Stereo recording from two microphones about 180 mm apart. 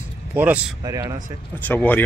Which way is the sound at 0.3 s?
10° right (ahead or behind).